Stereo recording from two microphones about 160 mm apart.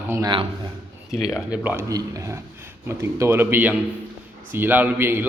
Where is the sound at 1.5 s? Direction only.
10° right (ahead or behind).